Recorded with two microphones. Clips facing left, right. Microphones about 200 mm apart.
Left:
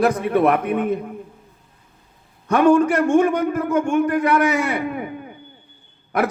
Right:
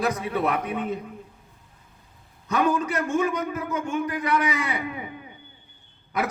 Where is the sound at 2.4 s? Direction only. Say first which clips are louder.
Left 9 dB; 55° left (ahead or behind).